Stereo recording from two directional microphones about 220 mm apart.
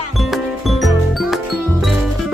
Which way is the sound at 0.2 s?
Centre (ahead or behind).